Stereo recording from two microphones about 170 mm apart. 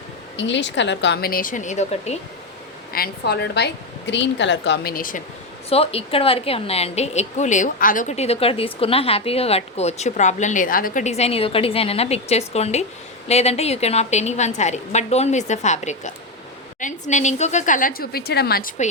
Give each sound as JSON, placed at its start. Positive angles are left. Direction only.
{"t": 0.3, "sound": "speech", "side_deg": 90}
{"t": 2.9, "sound": "a woman's voice", "side_deg": 65}
{"t": 5.6, "sound": "a woman's voice", "side_deg": 35}